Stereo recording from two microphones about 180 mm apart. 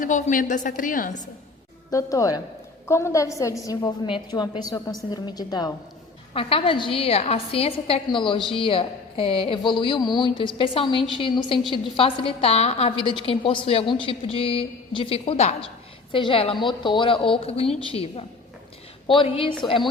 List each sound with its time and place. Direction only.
0.0 s a woman's voice: 45° left (ahead or behind)
1.9 s a woman's voice: 20° left (ahead or behind)